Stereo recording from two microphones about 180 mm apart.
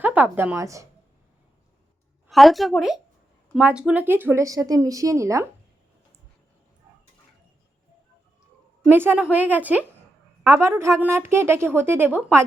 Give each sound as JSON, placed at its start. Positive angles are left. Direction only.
{"t": 0.0, "sound": "a woman's voice", "side_deg": -10}
{"t": 2.3, "sound": "a woman's voice", "side_deg": 0}
{"t": 8.9, "sound": "a woman's voice", "side_deg": -10}